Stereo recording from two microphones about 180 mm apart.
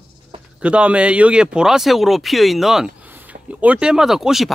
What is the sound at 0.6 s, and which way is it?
Speech, 5° right (ahead or behind).